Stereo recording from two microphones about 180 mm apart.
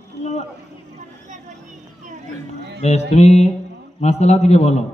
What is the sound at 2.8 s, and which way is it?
A man's voice, 35° left (ahead or behind).